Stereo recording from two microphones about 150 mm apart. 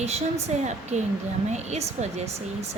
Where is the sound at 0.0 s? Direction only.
45° right (ahead or behind).